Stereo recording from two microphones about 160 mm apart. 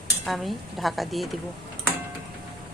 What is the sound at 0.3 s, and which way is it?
Speech, centre (ahead or behind).